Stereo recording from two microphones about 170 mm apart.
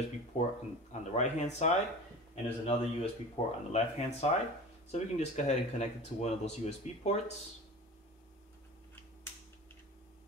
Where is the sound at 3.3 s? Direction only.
40° left (ahead or behind).